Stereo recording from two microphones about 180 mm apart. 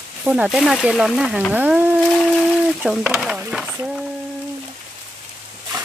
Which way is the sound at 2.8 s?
5° right (ahead or behind).